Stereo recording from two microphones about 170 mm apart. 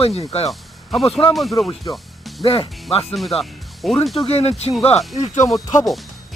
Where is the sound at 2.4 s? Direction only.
35° left (ahead or behind).